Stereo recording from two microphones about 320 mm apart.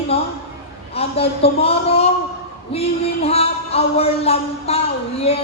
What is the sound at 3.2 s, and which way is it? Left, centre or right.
Speech, centre.